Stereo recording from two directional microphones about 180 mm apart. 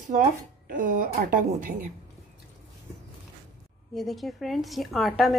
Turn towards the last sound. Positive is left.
turn(degrees=0)  # may be behind; listen again after turning